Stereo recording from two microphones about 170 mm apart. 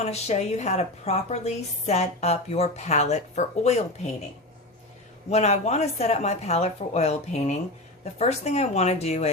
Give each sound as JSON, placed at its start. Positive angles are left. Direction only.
{"t": 0.0, "sound": "a woman's voice", "side_deg": 40}
{"t": 5.3, "sound": "a woman's voice", "side_deg": 40}